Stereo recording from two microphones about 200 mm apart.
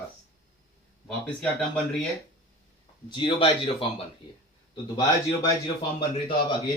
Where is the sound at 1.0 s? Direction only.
5° left (ahead or behind).